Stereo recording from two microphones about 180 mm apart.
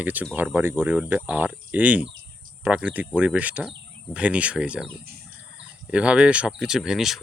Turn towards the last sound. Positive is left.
turn(degrees=0)  # may be behind; listen again after turning